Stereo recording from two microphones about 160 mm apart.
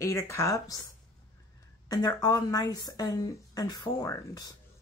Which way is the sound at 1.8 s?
25° left (ahead or behind).